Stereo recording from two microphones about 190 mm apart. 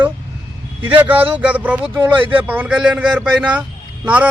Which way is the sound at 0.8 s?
10° right (ahead or behind).